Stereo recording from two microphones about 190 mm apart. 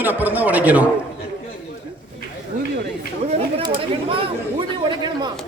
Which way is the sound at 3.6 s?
30° right (ahead or behind).